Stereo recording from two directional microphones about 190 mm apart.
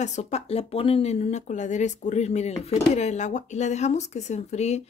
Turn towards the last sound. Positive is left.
turn(degrees=35)  # may be behind; listen again after turning